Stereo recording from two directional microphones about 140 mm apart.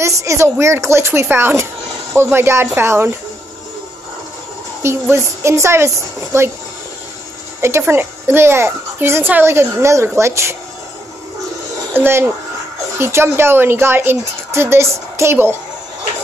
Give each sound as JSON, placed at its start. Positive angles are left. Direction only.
{"t": 0.0, "sound": "a woman's voice", "side_deg": -20}
{"t": 4.8, "sound": "a woman's voice", "side_deg": -20}
{"t": 7.6, "sound": "a woman's voice", "side_deg": -15}
{"t": 11.9, "sound": "a woman's voice", "side_deg": -15}